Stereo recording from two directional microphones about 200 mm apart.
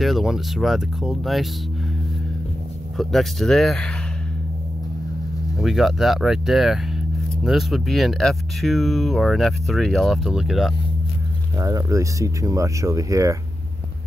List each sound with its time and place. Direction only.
0.0 s speech: centre (ahead or behind)
3.0 s speech: centre (ahead or behind)
5.6 s speech: centre (ahead or behind)
11.5 s speech: 15° right (ahead or behind)